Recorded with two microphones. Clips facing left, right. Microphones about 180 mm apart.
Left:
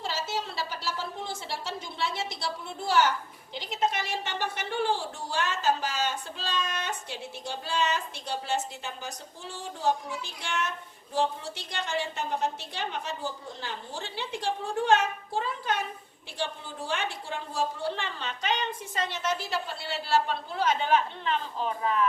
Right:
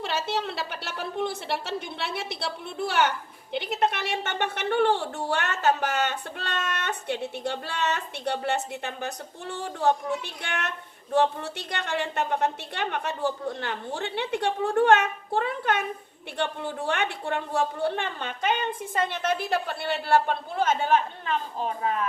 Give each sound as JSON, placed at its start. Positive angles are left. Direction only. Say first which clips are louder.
{"t": 0.0, "sound": "a woman's voice", "louder": "right 4 dB", "side_deg": -65}